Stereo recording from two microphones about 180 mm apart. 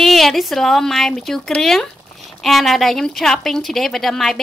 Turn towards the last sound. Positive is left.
turn(degrees=0)  # may be behind; listen again after turning